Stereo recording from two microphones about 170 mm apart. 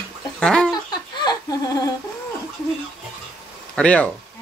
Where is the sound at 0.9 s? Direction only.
25° left (ahead or behind).